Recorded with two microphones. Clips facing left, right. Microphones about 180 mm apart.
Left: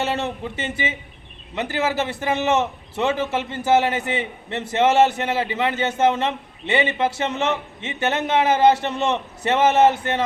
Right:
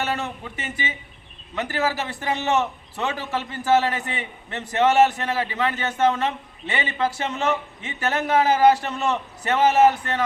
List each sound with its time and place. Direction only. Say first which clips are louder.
0.0 s a man's voice: left 3 dB; 25° left (ahead or behind)